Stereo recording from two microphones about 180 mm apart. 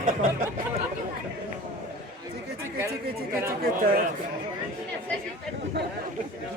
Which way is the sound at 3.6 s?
55° right (ahead or behind).